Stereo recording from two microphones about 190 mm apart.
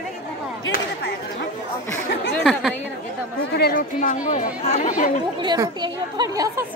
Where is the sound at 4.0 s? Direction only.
40° left (ahead or behind).